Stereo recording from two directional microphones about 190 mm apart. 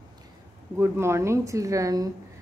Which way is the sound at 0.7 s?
15° right (ahead or behind).